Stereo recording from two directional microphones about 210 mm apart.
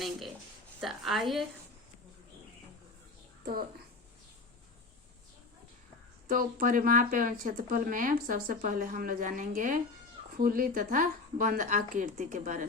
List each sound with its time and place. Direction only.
0.8 s a woman's voice: centre (ahead or behind)
6.2 s speech: 40° right (ahead or behind)